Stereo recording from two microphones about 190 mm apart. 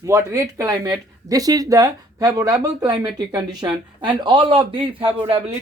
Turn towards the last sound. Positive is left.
turn(degrees=-30)  # may be behind; listen again after turning